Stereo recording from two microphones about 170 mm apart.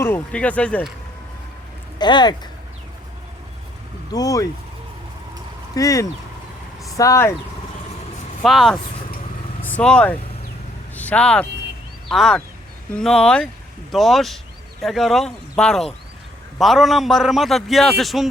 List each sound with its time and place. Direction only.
0.0 s speech: 10° left (ahead or behind)
2.0 s speech: 25° left (ahead or behind)
4.1 s speech: 20° left (ahead or behind)
5.7 s speech: 20° left (ahead or behind)
8.4 s a man's voice: centre (ahead or behind)